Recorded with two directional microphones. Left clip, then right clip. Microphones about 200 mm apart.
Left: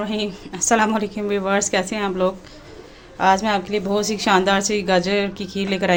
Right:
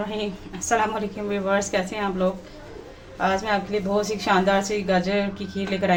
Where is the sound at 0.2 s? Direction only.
50° left (ahead or behind).